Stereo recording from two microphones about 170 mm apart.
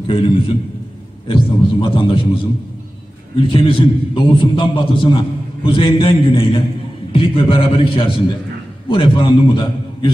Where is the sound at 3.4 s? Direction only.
30° left (ahead or behind).